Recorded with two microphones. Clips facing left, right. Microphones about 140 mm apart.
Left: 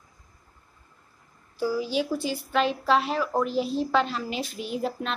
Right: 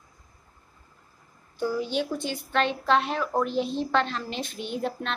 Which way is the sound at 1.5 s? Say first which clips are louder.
Left 1 dB; 5° left (ahead or behind).